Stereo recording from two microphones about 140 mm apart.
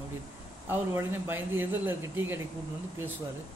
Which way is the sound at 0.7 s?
15° right (ahead or behind).